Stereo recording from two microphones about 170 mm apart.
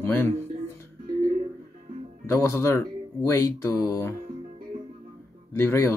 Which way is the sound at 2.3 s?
15° left (ahead or behind).